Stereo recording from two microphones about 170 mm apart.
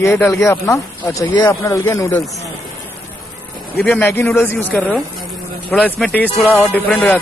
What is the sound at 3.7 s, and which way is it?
Speech, 10° left (ahead or behind).